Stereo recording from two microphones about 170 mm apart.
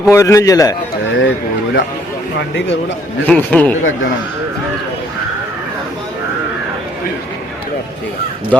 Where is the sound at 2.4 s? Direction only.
90° left.